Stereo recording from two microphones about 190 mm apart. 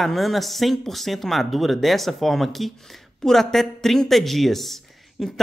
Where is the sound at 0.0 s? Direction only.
Centre (ahead or behind).